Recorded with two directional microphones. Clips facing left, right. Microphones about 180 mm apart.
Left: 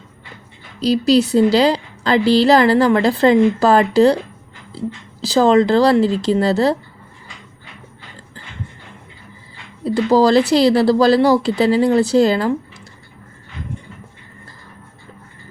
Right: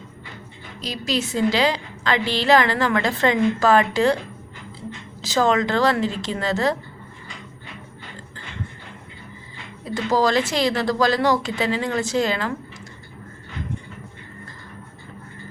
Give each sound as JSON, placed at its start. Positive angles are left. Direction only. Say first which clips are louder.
{"t": 0.8, "sound": "a woman's voice", "louder": "left 12 dB", "side_deg": 35}
{"t": 5.2, "sound": "a woman's voice", "louder": "left 7 dB", "side_deg": 35}
{"t": 9.8, "sound": "a woman's voice", "louder": "left 7 dB", "side_deg": 35}